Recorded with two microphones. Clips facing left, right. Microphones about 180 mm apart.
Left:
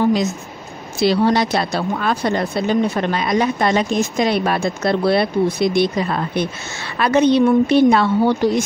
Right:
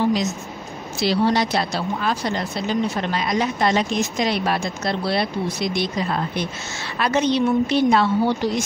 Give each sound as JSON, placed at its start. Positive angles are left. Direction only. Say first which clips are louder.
{"t": 0.0, "sound": "a woman's voice", "louder": "left 4 dB", "side_deg": 55}